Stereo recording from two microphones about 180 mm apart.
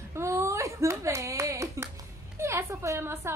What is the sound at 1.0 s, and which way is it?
Hands, 15° right (ahead or behind).